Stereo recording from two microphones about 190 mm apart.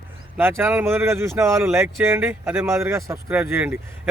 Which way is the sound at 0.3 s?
10° right (ahead or behind).